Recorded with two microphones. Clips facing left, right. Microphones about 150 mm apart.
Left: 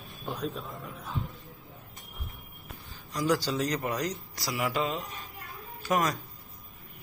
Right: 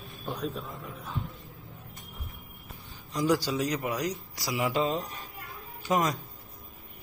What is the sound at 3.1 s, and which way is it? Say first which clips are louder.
Speech: right 1 dB; 20° right (ahead or behind).